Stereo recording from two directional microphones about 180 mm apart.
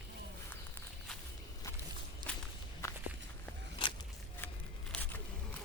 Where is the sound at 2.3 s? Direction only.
10° left (ahead or behind).